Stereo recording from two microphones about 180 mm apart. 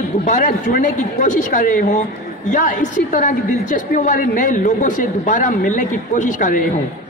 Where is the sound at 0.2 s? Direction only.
45° left (ahead or behind).